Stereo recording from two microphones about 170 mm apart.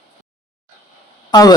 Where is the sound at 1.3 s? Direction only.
25° left (ahead or behind).